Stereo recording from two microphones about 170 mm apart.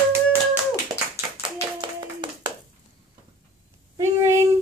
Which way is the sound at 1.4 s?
30° right (ahead or behind).